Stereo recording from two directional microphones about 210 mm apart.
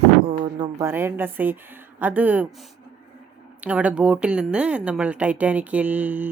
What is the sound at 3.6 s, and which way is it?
A woman's voice, 5° right (ahead or behind).